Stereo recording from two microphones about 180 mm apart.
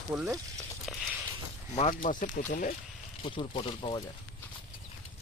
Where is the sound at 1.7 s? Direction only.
40° left (ahead or behind).